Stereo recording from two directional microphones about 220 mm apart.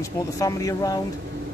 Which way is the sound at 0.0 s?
15° left (ahead or behind).